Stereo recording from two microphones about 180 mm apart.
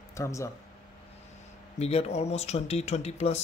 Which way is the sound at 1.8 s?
35° left (ahead or behind).